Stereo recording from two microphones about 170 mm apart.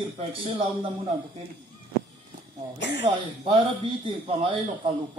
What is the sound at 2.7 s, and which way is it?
Speech, 90° left.